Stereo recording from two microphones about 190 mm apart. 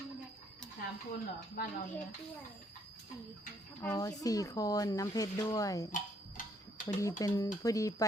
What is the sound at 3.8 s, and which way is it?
Speech, 20° left (ahead or behind).